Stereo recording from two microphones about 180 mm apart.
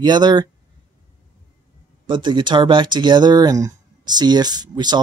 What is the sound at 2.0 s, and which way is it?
Speech, 25° right (ahead or behind).